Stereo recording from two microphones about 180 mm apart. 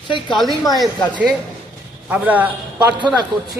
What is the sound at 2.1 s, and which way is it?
Speech, 10° right (ahead or behind).